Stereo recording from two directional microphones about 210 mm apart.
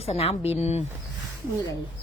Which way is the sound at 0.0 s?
30° left (ahead or behind).